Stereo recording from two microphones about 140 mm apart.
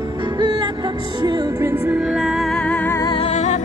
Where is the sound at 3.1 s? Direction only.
50° left (ahead or behind).